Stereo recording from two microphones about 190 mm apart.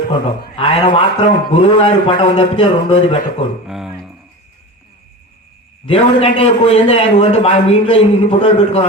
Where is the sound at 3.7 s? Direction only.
5° right (ahead or behind).